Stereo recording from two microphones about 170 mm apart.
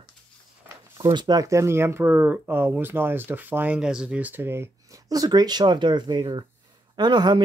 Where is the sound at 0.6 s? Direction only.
20° right (ahead or behind).